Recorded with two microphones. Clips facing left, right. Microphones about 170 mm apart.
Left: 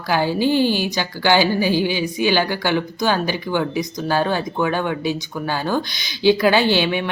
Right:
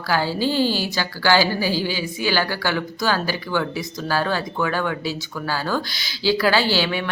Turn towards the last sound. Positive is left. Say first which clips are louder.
# left 3 dB
turn(degrees=20)  # may be behind; listen again after turning